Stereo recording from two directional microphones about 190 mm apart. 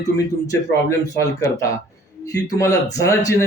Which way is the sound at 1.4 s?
15° left (ahead or behind).